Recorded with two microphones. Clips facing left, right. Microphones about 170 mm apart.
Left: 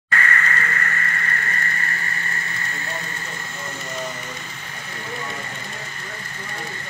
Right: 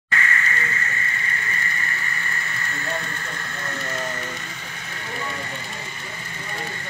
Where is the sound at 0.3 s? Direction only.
60° left (ahead or behind).